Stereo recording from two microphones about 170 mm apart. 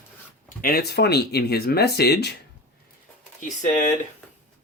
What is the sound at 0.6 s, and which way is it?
Speech, 65° left (ahead or behind).